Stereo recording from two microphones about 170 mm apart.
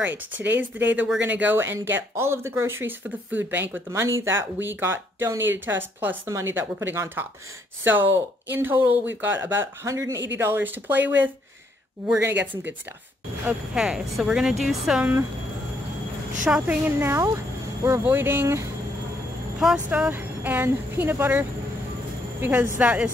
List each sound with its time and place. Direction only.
0.0 s a woman's voice: 10° right (ahead or behind)
16.4 s speech: 10° right (ahead or behind)
19.6 s speech: 5° right (ahead or behind)